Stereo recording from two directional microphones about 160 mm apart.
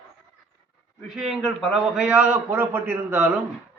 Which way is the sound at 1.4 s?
Centre (ahead or behind).